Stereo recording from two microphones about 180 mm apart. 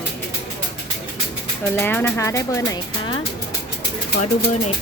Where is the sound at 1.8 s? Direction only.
10° left (ahead or behind).